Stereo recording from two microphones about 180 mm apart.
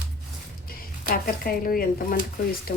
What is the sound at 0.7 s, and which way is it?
Speech, 55° left (ahead or behind).